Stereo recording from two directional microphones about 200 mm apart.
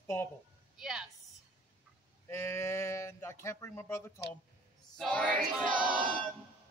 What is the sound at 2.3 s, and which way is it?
Speech, 15° left (ahead or behind).